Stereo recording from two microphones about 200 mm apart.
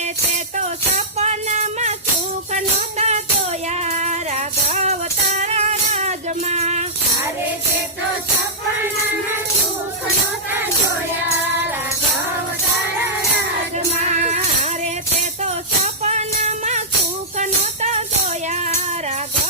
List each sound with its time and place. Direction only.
0.9 s music: 35° right (ahead or behind)
15.8 s music: 35° right (ahead or behind)